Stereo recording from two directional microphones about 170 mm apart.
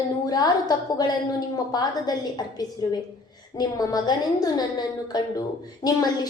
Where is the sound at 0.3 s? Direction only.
25° left (ahead or behind).